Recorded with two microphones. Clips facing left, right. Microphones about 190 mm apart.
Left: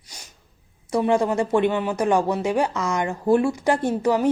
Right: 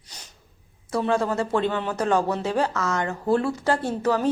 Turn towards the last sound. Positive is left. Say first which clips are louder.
# left 3 dB
turn(degrees=15)  # may be behind; listen again after turning